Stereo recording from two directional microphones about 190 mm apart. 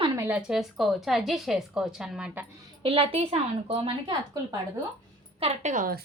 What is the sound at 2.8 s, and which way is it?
A woman's voice, 30° right (ahead or behind).